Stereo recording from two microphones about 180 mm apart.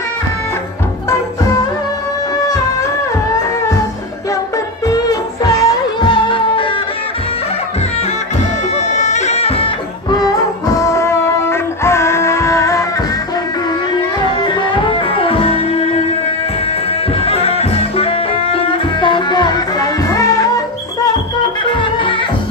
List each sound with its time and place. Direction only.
4.8 s music: 20° left (ahead or behind)
8.9 s music: 40° left (ahead or behind); by 12.8 s 15° left (ahead or behind)
14.4 s music: 25° left (ahead or behind)
17.2 s music: 35° left (ahead or behind)